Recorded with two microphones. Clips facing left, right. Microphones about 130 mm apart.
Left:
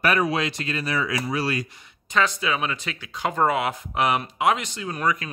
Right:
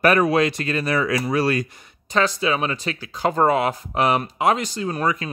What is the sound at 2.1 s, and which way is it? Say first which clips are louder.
Speech: right 3 dB; 35° right (ahead or behind).